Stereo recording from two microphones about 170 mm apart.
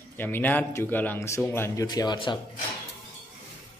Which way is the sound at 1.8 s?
25° left (ahead or behind).